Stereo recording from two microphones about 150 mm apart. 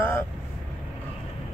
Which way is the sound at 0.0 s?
15° left (ahead or behind).